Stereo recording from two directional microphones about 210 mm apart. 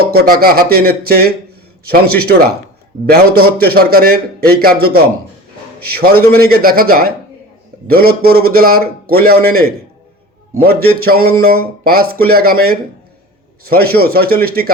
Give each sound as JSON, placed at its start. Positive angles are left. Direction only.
{"t": 0.0, "sound": "a man's voice", "side_deg": -45}